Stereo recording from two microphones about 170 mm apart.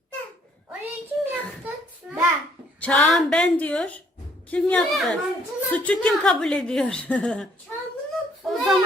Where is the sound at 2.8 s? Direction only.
5° left (ahead or behind).